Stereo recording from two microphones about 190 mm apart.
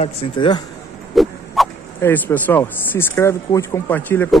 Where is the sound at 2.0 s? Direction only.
10° left (ahead or behind).